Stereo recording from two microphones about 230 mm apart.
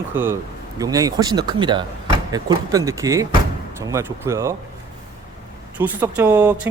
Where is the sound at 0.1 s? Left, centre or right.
Centre.